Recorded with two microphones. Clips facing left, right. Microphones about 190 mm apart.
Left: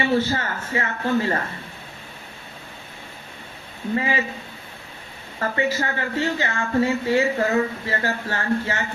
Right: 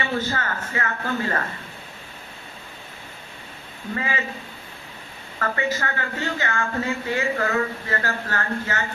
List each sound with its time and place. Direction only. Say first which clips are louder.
0.0 s speech: left 5 dB; 30° left (ahead or behind)
3.9 s speech: left 5 dB; 30° left (ahead or behind)
5.4 s speech: left 2 dB; 30° left (ahead or behind)